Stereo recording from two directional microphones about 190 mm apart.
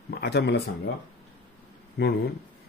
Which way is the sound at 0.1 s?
60° left (ahead or behind).